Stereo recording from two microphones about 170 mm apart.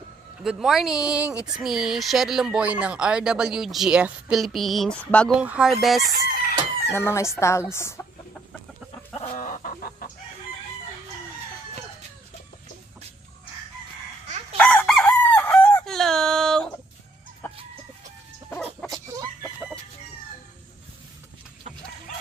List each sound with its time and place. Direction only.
0.4 s speech: centre (ahead or behind)
5.4 s speech: 5° right (ahead or behind)
6.2 s chicken: 65° left (ahead or behind)
6.9 s speech: 15° left (ahead or behind)
9.3 s chicken: 50° left (ahead or behind)
14.6 s chicken: 10° left (ahead or behind)
18.5 s dog: 5° left (ahead or behind)
18.9 s chicken: 20° right (ahead or behind)